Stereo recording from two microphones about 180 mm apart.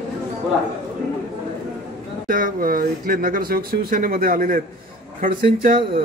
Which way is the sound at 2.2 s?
50° right (ahead or behind).